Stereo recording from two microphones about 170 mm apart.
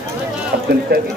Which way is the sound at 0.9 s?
65° right (ahead or behind).